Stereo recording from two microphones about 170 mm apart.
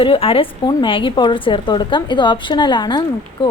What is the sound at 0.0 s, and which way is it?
A woman's voice, 35° left (ahead or behind).